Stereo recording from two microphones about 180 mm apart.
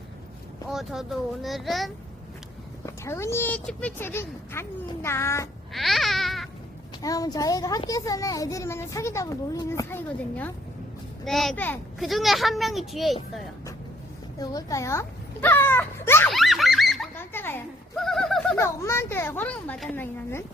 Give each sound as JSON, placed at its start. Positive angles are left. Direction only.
{"t": 0.7, "sound": "a child's voice", "side_deg": 0}
{"t": 2.8, "sound": "speech", "side_deg": 15}
{"t": 5.7, "sound": "a sound", "side_deg": 0}
{"t": 7.0, "sound": "a child's voice", "side_deg": 20}
{"t": 14.3, "sound": "speech", "side_deg": 20}
{"t": 16.3, "sound": "fowl", "side_deg": 0}
{"t": 17.2, "sound": "a sound", "side_deg": 10}
{"t": 18.5, "sound": "speech", "side_deg": 15}